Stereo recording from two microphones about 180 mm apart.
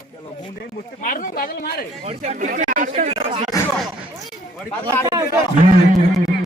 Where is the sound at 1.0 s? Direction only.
50° left (ahead or behind).